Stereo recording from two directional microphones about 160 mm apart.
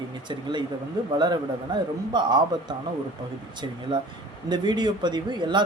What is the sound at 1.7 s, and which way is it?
Speech, 25° right (ahead or behind).